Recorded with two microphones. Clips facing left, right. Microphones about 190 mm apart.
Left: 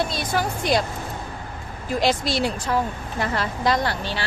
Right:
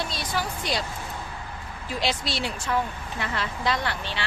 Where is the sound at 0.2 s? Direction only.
50° left (ahead or behind).